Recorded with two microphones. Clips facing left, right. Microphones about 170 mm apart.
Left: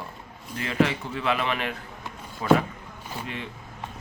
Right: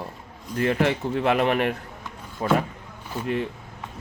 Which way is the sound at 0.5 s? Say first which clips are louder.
Right 2 dB; 50° right (ahead or behind).